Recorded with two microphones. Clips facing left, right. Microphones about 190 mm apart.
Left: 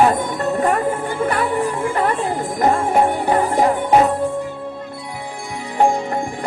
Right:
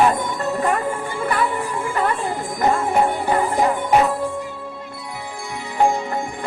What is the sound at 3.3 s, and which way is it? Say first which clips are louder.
Music: left 2 dB; 35° left (ahead or behind).